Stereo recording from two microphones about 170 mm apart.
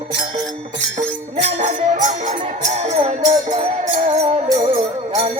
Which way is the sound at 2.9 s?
30° right (ahead or behind).